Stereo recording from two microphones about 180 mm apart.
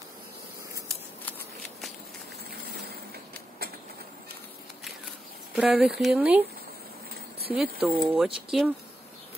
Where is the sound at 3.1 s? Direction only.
60° right (ahead or behind).